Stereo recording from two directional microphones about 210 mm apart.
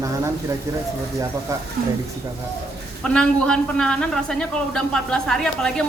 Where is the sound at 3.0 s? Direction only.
5° left (ahead or behind).